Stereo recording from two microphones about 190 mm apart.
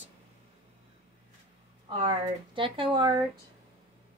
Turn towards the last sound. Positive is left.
turn(degrees=-25)  # may be behind; listen again after turning